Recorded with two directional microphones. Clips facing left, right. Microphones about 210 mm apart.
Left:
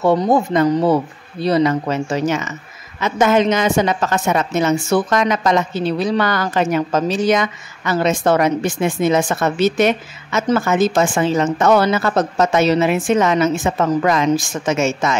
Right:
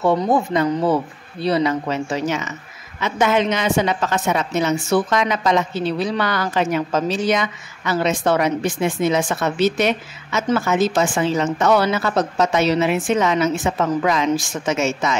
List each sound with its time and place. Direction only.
0.0 s a woman's voice: 45° left (ahead or behind)